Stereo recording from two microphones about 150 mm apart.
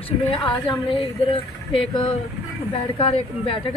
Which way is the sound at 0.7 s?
Centre (ahead or behind).